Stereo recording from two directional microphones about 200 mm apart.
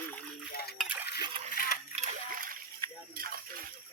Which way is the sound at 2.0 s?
45° right (ahead or behind).